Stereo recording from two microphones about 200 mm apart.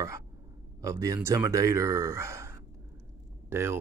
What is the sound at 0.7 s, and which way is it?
Speech, 15° right (ahead or behind).